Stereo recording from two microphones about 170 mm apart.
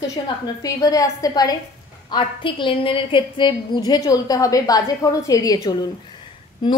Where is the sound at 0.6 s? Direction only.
20° left (ahead or behind).